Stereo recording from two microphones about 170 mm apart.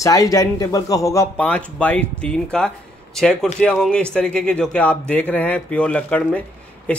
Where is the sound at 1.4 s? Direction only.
5° left (ahead or behind).